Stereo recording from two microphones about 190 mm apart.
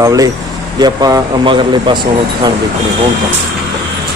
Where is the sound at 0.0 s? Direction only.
20° right (ahead or behind).